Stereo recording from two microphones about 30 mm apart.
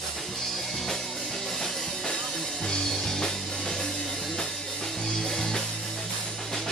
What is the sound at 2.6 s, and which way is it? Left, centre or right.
Music, left.